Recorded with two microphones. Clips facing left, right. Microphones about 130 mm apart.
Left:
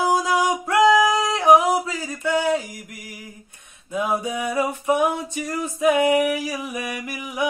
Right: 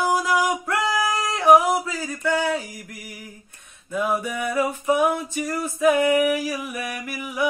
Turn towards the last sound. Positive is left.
turn(degrees=15)  # may be behind; listen again after turning